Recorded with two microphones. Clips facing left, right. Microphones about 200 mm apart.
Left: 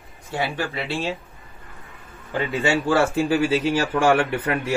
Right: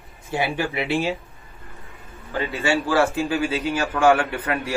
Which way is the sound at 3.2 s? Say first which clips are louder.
Left 3 dB; 30° left (ahead or behind).